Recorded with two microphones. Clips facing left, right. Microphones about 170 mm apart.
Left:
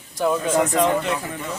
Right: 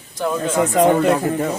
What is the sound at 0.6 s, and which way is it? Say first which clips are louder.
Speech: right 5 dB; 45° right (ahead or behind).